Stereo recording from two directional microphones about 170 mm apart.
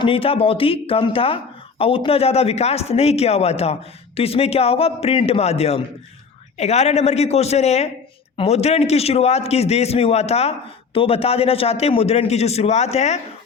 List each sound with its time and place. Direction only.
0.0 s speech: 35° left (ahead or behind)